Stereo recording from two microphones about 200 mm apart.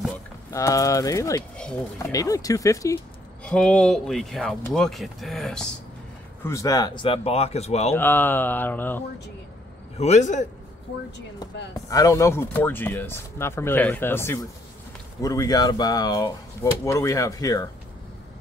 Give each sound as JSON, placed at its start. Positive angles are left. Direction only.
{"t": 0.5, "sound": "speech", "side_deg": 15}
{"t": 1.6, "sound": "speech", "side_deg": 5}
{"t": 2.0, "sound": "speech", "side_deg": 15}
{"t": 3.4, "sound": "speech", "side_deg": 5}
{"t": 6.4, "sound": "speech", "side_deg": 15}
{"t": 7.9, "sound": "speech", "side_deg": 10}
{"t": 9.9, "sound": "a man's voice", "side_deg": 35}
{"t": 11.7, "sound": "speech", "side_deg": 15}